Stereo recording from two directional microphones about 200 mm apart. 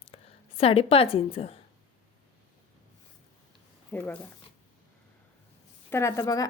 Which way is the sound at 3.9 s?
5° left (ahead or behind).